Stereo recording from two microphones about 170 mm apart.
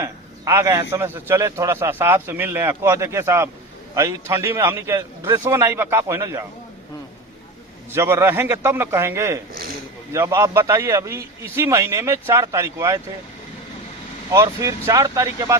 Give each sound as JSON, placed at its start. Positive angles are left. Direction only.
{"t": 0.0, "sound": "a man's voice", "side_deg": -20}
{"t": 7.9, "sound": "a man's voice", "side_deg": -15}
{"t": 14.3, "sound": "speech", "side_deg": -20}